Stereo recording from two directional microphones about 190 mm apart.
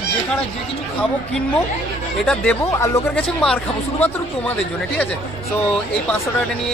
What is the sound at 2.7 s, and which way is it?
Speech, 15° left (ahead or behind).